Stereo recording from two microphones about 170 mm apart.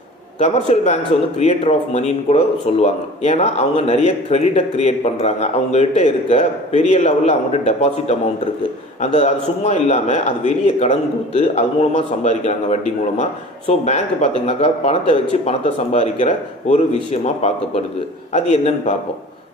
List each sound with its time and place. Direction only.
0.4 s a man's voice: 35° left (ahead or behind)